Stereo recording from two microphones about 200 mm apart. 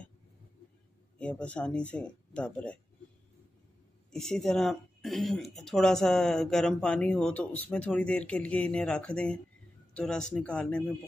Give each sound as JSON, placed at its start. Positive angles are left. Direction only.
{"t": 1.1, "sound": "speech", "side_deg": 5}
{"t": 4.1, "sound": "speech", "side_deg": 0}